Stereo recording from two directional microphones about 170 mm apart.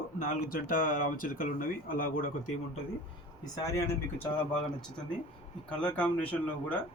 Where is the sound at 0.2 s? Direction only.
55° left (ahead or behind).